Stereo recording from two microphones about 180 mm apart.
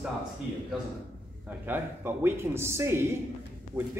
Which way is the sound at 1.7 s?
15° right (ahead or behind).